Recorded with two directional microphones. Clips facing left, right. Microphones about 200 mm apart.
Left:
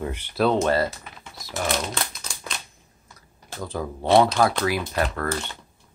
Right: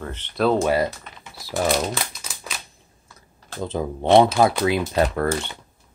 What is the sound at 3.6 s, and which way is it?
Speech, 20° right (ahead or behind).